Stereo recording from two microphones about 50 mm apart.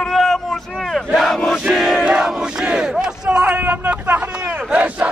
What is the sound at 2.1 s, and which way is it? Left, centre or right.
Battle cry, centre.